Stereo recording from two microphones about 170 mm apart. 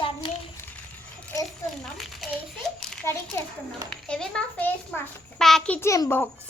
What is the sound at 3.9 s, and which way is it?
A child's voice, 5° left (ahead or behind).